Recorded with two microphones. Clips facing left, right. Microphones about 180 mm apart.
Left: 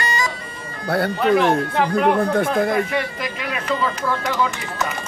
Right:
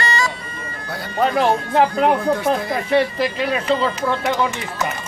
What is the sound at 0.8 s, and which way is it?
Speech, 65° left (ahead or behind).